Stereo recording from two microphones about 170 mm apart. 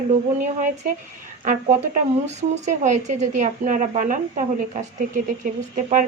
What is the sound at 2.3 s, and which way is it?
A woman's voice, 40° right (ahead or behind).